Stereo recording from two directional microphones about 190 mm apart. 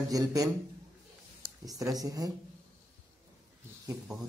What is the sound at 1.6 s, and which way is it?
Speech, 20° right (ahead or behind).